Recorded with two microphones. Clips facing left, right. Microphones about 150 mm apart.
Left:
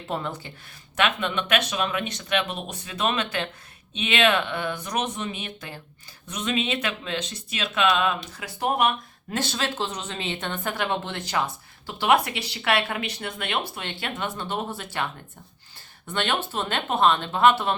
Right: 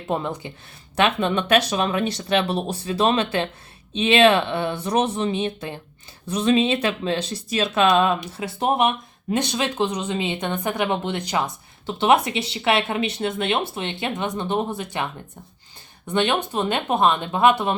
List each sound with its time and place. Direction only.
0.1 s speech: 20° right (ahead or behind)
0.9 s speech: 35° right (ahead or behind); by 15.0 s 15° right (ahead or behind)
16.0 s speech: 15° right (ahead or behind)